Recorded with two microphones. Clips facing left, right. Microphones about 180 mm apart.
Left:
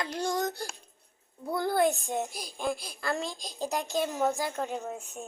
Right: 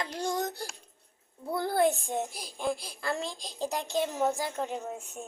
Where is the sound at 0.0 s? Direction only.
25° right (ahead or behind).